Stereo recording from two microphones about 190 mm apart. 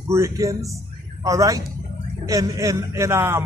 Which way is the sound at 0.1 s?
15° right (ahead or behind).